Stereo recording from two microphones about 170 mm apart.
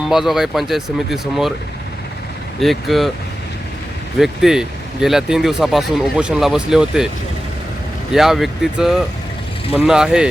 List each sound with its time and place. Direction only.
0.1 s speech: centre (ahead or behind)
2.6 s speech: centre (ahead or behind)
4.2 s speech: centre (ahead or behind)
8.1 s speech: centre (ahead or behind)